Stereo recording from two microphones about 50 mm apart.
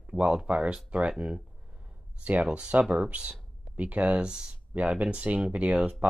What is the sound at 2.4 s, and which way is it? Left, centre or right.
Speech, centre.